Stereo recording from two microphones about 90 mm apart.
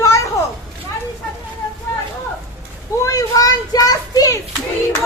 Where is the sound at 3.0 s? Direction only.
40° left (ahead or behind).